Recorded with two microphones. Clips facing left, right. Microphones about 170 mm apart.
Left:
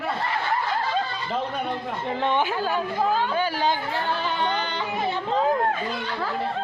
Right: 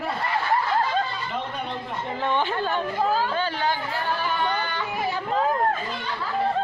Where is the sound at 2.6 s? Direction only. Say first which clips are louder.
Even; 5° left (ahead or behind).